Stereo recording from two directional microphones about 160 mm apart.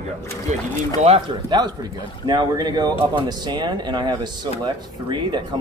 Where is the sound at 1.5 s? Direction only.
25° right (ahead or behind).